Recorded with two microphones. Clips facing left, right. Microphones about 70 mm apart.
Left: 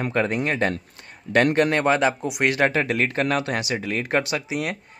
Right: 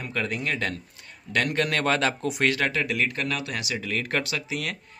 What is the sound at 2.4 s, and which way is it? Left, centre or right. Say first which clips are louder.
Speech: left 5 dB; left.